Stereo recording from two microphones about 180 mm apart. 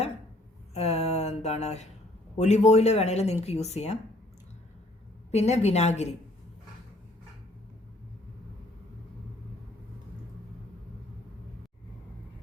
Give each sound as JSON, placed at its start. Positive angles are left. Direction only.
{"t": 0.7, "sound": "mantra", "side_deg": 35}
{"t": 2.4, "sound": "speech", "side_deg": 40}
{"t": 5.3, "sound": "speech", "side_deg": 35}